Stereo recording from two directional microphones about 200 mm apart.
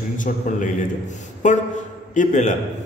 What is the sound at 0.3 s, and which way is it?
Speech, 40° left (ahead or behind).